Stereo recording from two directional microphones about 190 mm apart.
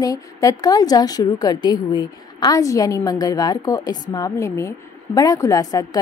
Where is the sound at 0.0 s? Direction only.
20° left (ahead or behind).